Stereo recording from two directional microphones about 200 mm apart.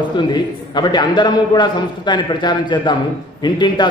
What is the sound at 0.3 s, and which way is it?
A man's voice, 20° left (ahead or behind).